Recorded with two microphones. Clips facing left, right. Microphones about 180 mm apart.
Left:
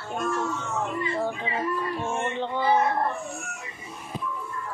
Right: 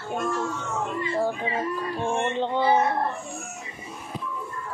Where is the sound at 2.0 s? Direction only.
15° right (ahead or behind).